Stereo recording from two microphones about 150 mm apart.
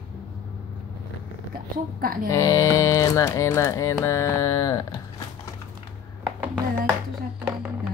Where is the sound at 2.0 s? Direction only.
75° right (ahead or behind).